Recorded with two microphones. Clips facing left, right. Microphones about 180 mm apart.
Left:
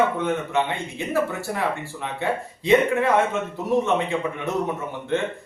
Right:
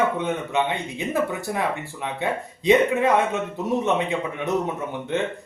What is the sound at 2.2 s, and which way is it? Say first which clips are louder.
A man's voice: left 1 dB; 20° right (ahead or behind).